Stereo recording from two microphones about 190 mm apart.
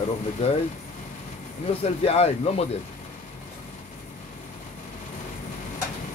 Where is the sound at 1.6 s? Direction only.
35° left (ahead or behind).